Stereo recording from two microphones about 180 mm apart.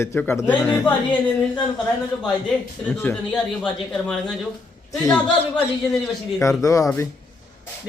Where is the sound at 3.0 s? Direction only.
10° left (ahead or behind).